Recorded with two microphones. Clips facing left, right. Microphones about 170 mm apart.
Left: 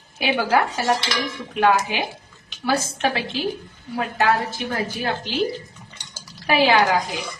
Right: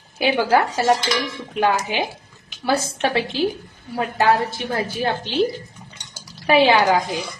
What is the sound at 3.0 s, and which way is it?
Speech, 30° right (ahead or behind).